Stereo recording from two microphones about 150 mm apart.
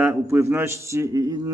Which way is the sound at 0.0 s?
15° right (ahead or behind).